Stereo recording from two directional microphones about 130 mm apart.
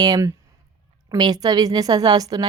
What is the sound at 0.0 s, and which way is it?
Speech, 30° right (ahead or behind).